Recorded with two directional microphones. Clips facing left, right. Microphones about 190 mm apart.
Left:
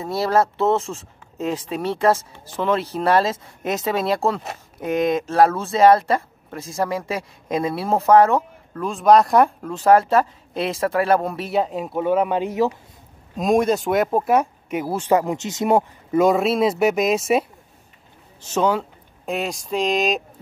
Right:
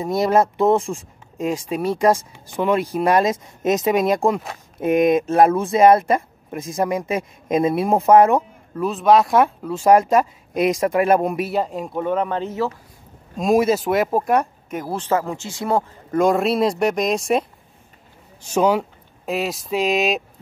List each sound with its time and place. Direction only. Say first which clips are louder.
0.0 s speech: right 2 dB; 15° right (ahead or behind)
8.8 s speech: even; centre (ahead or behind); by 11.4 s 20° right (ahead or behind)
11.4 s speech: left 1 dB; centre (ahead or behind)
13.4 s speech: right 1 dB; 5° right (ahead or behind); by 15.8 s 20° left (ahead or behind)
16.1 s speech: even; 5° left (ahead or behind)
18.4 s a sound: right 2 dB; 10° right (ahead or behind)
19.3 s speech: right 2 dB; centre (ahead or behind)